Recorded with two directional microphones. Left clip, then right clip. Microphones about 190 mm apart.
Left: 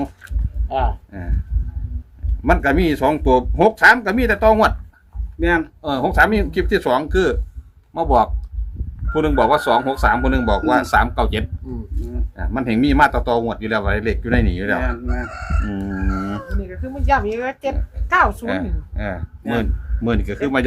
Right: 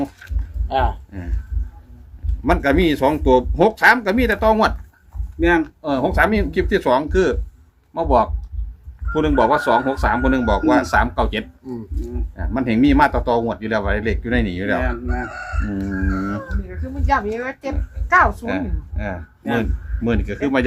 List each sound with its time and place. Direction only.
0.7 s speech: 40° right (ahead or behind)
2.4 s speech: 15° left (ahead or behind)
14.8 s speech: centre (ahead or behind)
15.3 s chicken: 60° left (ahead or behind)
16.5 s speech: 50° left (ahead or behind)
18.4 s speech: 25° left (ahead or behind)